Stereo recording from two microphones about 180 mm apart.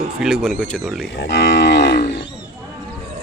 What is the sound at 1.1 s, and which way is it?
Livestock, 85° left.